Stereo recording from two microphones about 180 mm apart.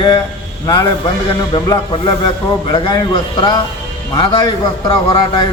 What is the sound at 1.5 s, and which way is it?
A man's voice, 25° left (ahead or behind).